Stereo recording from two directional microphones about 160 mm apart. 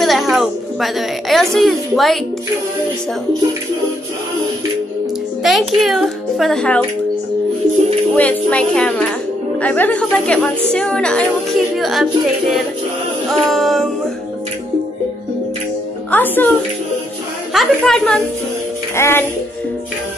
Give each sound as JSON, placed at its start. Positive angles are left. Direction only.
{"t": 0.0, "sound": "a woman's voice", "side_deg": 0}
{"t": 5.4, "sound": "a child's voice", "side_deg": 0}
{"t": 8.2, "sound": "a woman's voice", "side_deg": 10}
{"t": 16.1, "sound": "a woman's voice", "side_deg": 10}
{"t": 17.5, "sound": "a child's voice", "side_deg": 0}
{"t": 18.9, "sound": "a woman's voice", "side_deg": 15}